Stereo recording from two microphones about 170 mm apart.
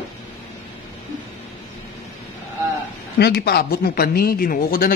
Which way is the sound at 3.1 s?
70° left (ahead or behind).